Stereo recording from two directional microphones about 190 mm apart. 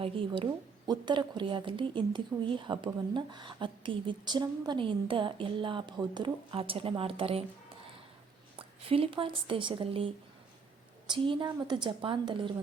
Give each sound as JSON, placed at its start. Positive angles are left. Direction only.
{"t": 0.0, "sound": "a woman's voice", "side_deg": -25}
{"t": 8.5, "sound": "a woman's voice", "side_deg": -30}